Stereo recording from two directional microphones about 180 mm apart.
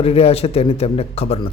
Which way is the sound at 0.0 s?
35° left (ahead or behind).